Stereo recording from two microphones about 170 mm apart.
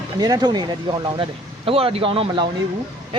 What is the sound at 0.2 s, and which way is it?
Speech, 25° right (ahead or behind).